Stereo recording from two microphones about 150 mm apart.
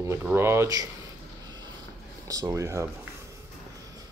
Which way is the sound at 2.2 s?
25° right (ahead or behind).